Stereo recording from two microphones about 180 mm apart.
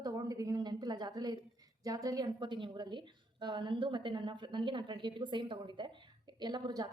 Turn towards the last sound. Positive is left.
turn(degrees=-25)  # may be behind; listen again after turning